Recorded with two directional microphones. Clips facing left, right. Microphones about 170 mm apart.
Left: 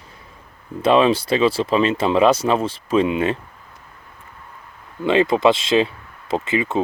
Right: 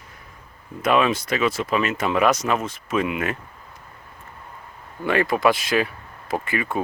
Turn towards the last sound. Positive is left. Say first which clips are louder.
# left 4 dB
turn(degrees=20)  # may be behind; listen again after turning